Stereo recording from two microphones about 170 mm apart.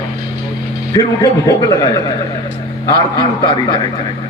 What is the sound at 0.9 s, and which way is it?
Speech, 20° left (ahead or behind).